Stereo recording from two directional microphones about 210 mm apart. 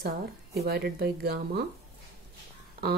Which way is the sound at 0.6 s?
50° right (ahead or behind).